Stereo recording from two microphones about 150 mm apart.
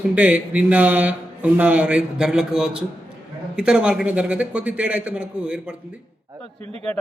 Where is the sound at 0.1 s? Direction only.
10° right (ahead or behind).